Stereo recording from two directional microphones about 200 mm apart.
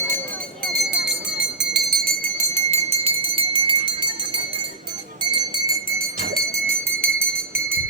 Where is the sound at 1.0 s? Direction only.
60° right (ahead or behind).